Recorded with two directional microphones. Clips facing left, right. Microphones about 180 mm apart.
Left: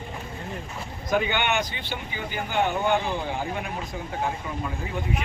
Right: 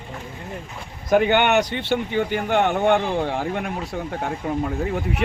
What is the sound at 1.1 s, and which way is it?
Speech, 55° right (ahead or behind).